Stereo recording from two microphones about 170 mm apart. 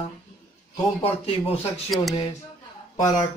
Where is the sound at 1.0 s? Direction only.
35° left (ahead or behind).